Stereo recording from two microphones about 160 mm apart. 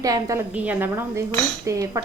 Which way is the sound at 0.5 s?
10° right (ahead or behind).